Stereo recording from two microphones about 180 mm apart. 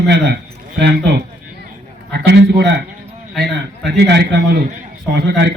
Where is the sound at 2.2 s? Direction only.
65° right (ahead or behind).